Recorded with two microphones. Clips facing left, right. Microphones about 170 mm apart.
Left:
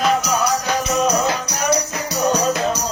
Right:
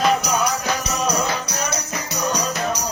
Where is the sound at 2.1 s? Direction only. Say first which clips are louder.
Left 6 dB; 15° right (ahead or behind).